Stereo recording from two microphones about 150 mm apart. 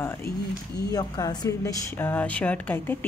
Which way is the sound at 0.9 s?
25° left (ahead or behind).